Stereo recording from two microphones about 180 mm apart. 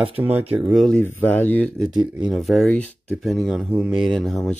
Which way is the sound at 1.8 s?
5° right (ahead or behind).